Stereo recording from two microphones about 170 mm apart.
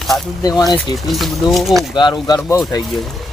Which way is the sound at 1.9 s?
25° left (ahead or behind).